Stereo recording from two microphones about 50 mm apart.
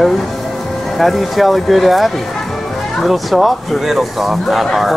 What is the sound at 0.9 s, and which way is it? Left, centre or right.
Speech, centre.